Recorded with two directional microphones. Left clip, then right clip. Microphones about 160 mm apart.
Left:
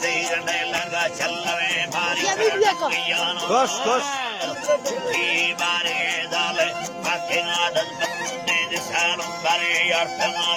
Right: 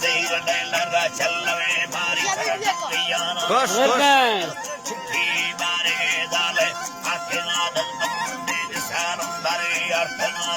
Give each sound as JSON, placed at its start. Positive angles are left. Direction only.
{"t": 0.0, "sound": "music", "side_deg": 0}
{"t": 2.2, "sound": "speech", "side_deg": 90}
{"t": 3.1, "sound": "speech", "side_deg": 15}
{"t": 3.8, "sound": "a man's voice", "side_deg": -85}
{"t": 5.6, "sound": "music", "side_deg": 0}